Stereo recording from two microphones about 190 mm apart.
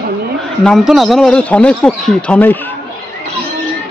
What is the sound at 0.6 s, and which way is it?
Speech, centre (ahead or behind).